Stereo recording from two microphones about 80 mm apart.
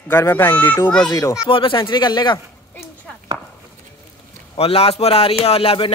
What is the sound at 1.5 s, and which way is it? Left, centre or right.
Speech, left.